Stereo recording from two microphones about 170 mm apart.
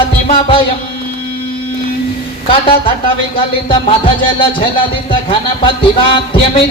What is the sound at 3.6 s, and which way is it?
A man's voice, 30° left (ahead or behind).